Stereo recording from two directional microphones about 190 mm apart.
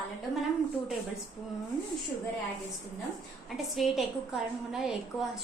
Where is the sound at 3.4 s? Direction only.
Centre (ahead or behind).